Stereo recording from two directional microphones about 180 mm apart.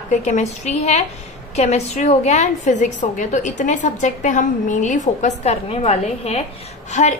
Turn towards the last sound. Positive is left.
turn(degrees=40)  # may be behind; listen again after turning